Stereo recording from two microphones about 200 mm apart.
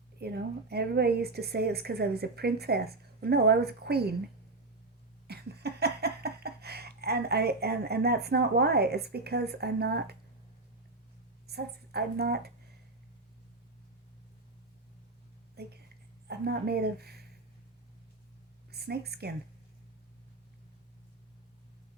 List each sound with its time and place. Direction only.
0.2 s speech: 55° right (ahead or behind)
5.3 s a sound: 55° right (ahead or behind)
11.4 s a woman's voice: 55° right (ahead or behind)
15.6 s a sound: 55° right (ahead or behind)
16.2 s speech: 55° right (ahead or behind)
18.7 s a woman's voice: 50° right (ahead or behind)